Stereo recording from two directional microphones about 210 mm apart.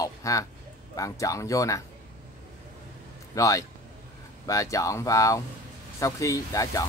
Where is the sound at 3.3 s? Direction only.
15° left (ahead or behind).